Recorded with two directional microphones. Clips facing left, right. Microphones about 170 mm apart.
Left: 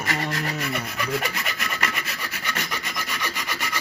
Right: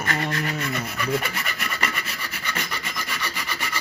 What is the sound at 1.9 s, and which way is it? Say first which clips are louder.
Rub: even; 10° left (ahead or behind).